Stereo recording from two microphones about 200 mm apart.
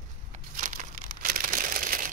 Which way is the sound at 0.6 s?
40° right (ahead or behind).